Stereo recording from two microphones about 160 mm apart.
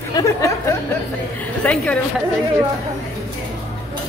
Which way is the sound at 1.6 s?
10° left (ahead or behind).